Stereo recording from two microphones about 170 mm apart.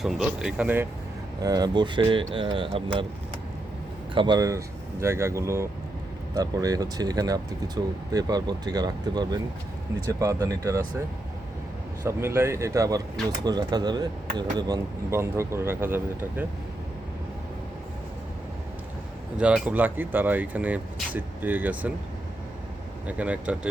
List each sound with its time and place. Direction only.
0.0 s speech: 5° right (ahead or behind)
1.4 s speech: 20° right (ahead or behind)
4.1 s speech: 25° right (ahead or behind)
12.0 s speech: 15° right (ahead or behind)
19.4 s speech: 5° right (ahead or behind)
23.0 s speech: 10° right (ahead or behind)